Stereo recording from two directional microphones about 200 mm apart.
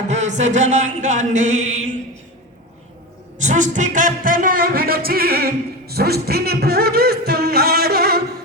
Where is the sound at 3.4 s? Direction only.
35° right (ahead or behind).